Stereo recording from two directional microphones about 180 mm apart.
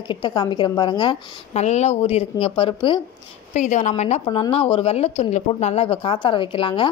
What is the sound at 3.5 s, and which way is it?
Speech, 40° left (ahead or behind).